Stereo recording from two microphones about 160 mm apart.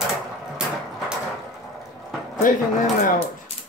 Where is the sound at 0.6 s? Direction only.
5° right (ahead or behind).